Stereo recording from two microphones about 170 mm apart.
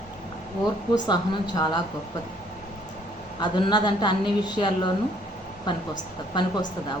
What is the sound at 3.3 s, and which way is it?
A woman's voice, 25° left (ahead or behind).